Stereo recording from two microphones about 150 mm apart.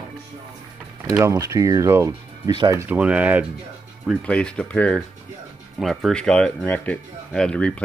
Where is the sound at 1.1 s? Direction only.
20° right (ahead or behind).